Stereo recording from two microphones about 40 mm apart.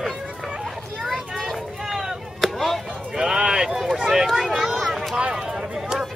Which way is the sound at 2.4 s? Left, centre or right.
Centre.